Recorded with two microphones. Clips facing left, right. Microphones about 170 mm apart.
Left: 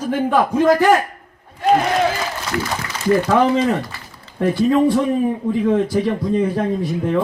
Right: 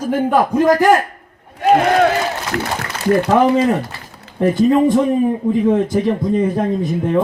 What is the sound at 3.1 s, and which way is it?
Speech, 15° right (ahead or behind).